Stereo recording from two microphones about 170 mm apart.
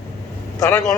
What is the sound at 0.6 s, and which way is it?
Speech, 20° left (ahead or behind).